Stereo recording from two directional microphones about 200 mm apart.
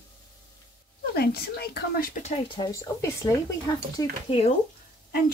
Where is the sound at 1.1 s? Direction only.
50° left (ahead or behind).